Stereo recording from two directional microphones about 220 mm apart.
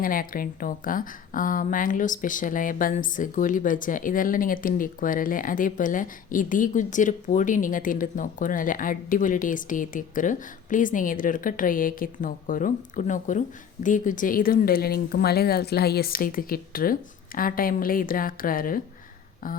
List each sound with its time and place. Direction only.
0.0 s speech: 40° left (ahead or behind)